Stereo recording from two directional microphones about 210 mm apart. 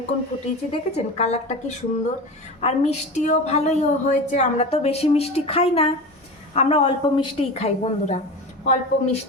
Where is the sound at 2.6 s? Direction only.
30° left (ahead or behind).